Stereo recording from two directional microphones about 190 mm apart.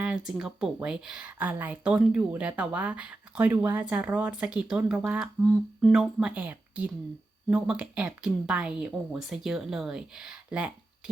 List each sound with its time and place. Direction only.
0.0 s speech: 5° right (ahead or behind)